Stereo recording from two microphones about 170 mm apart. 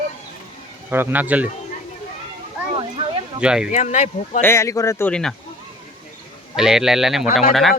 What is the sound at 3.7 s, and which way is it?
Speech, 45° left (ahead or behind).